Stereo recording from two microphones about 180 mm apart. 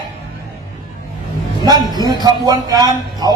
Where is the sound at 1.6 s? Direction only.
20° right (ahead or behind).